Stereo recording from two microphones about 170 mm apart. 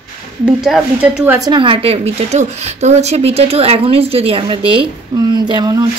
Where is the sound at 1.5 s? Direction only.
30° right (ahead or behind).